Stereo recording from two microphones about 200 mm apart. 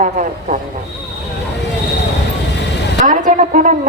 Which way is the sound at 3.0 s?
40° right (ahead or behind).